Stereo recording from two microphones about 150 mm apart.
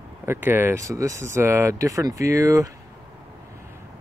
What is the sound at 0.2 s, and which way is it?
Speech, 15° right (ahead or behind).